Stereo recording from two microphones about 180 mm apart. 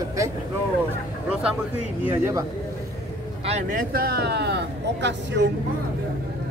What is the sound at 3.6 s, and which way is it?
Speech, 55° right (ahead or behind).